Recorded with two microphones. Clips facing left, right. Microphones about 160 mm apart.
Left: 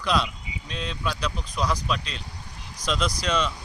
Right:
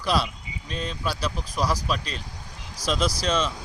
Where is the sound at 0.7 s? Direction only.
45° right (ahead or behind).